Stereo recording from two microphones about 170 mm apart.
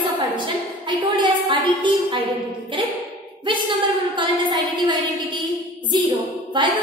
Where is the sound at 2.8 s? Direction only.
30° right (ahead or behind).